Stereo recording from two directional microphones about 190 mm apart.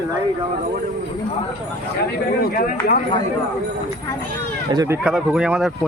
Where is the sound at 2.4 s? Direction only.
50° left (ahead or behind).